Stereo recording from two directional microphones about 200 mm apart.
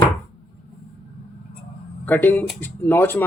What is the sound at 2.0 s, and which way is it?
Speech, 10° left (ahead or behind).